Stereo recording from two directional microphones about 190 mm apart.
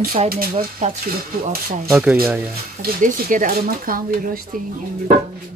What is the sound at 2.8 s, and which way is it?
Speech, 45° right (ahead or behind).